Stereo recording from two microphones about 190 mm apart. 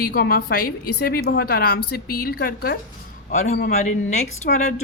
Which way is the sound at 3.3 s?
40° left (ahead or behind).